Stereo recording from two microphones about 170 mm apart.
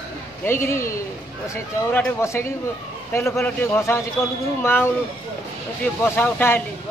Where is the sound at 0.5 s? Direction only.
15° left (ahead or behind).